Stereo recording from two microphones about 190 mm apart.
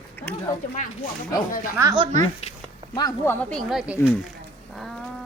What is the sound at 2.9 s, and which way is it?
Speech, 15° left (ahead or behind).